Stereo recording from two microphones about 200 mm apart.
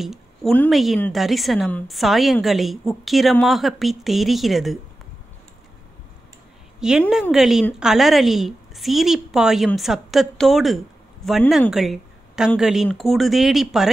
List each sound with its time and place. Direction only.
0.0 s a woman's voice: centre (ahead or behind)
6.8 s a woman's voice: 5° right (ahead or behind)